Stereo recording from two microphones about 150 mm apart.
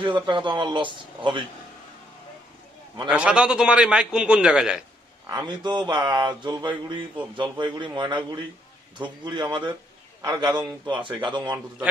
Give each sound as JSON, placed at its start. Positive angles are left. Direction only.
{"t": 0.0, "sound": "speech", "side_deg": -30}
{"t": 3.1, "sound": "a man's voice", "side_deg": -5}
{"t": 5.5, "sound": "speech", "side_deg": -30}
{"t": 9.2, "sound": "a man's voice", "side_deg": -30}